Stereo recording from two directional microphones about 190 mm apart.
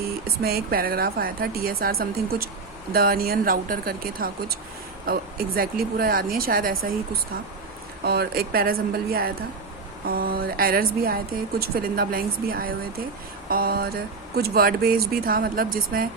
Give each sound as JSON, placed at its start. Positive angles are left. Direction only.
{"t": 0.4, "sound": "speech", "side_deg": -55}